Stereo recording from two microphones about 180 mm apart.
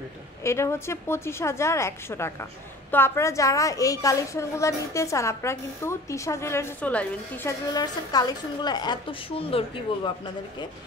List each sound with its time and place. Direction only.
0.4 s a woman's voice: 15° left (ahead or behind)
7.7 s a woman's voice: 20° left (ahead or behind)